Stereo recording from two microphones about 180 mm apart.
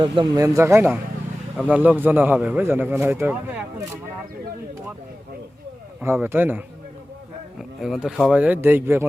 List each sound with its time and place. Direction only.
0.0 s a man's voice: 20° right (ahead or behind)
6.0 s a man's voice: 10° right (ahead or behind)
7.8 s a man's voice: centre (ahead or behind)